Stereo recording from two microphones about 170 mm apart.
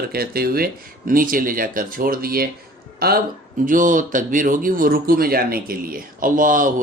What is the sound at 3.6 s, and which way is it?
Speech, 50° right (ahead or behind).